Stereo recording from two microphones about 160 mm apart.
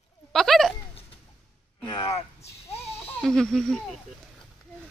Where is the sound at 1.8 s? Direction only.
30° left (ahead or behind).